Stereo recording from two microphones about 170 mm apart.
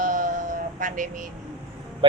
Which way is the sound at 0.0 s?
50° right (ahead or behind).